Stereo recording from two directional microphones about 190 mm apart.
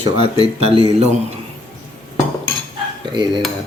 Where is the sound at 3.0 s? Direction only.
25° right (ahead or behind).